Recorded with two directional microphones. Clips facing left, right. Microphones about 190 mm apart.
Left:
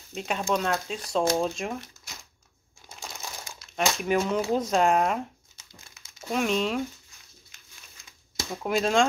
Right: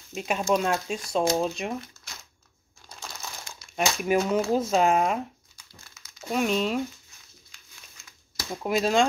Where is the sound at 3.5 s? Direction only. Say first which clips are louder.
Even; 5° right (ahead or behind).